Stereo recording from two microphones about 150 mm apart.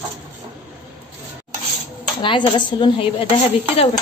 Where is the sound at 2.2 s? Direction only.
35° left (ahead or behind).